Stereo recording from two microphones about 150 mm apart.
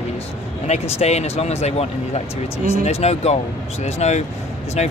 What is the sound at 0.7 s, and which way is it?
Speech, 45° left (ahead or behind).